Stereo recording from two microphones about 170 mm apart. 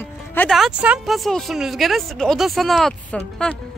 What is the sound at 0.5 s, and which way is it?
Speech, 5° right (ahead or behind).